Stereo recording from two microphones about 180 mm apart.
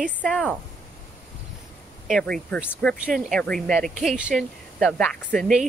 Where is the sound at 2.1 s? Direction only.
5° left (ahead or behind).